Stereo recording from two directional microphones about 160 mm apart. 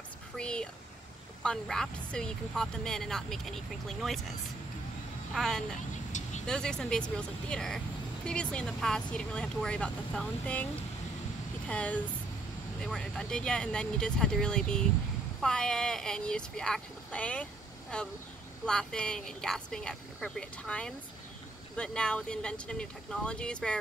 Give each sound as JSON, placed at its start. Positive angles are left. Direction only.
{"t": 0.4, "sound": "a sound", "side_deg": 5}
{"t": 1.4, "sound": "speech", "side_deg": 5}
{"t": 5.3, "sound": "speech", "side_deg": 0}